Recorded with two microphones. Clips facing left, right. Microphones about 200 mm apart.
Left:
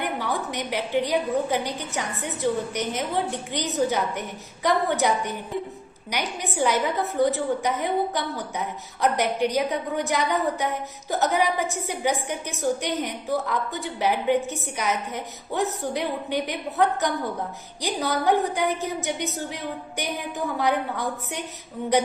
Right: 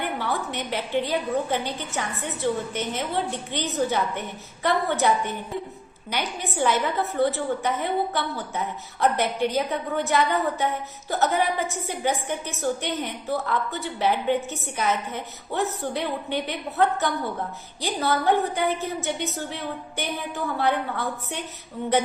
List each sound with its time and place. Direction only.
0.0 s a woman's voice: 15° left (ahead or behind)